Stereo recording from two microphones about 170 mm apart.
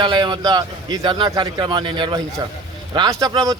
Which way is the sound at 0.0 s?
25° right (ahead or behind).